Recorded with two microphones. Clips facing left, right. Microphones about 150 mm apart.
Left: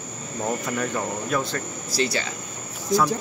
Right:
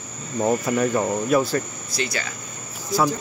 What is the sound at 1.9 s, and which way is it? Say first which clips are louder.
Speech: left 6 dB; 30° left (ahead or behind).